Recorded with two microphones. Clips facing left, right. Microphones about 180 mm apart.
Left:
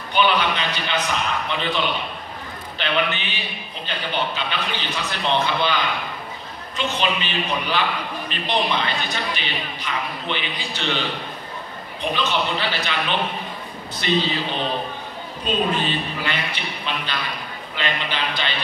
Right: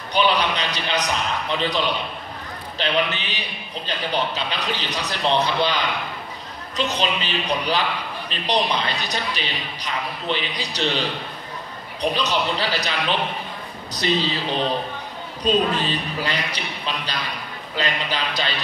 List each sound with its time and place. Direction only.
0.1 s a man's voice: 35° right (ahead or behind)
2.8 s a man's voice: 35° right (ahead or behind)
6.8 s a man's voice: 35° right (ahead or behind)
14.0 s a man's voice: 35° right (ahead or behind)
15.4 s a man's voice: 40° right (ahead or behind)